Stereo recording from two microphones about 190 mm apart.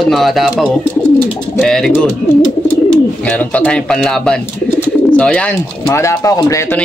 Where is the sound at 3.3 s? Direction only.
5° left (ahead or behind).